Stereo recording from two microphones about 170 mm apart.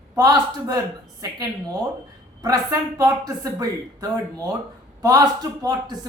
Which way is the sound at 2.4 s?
20° right (ahead or behind).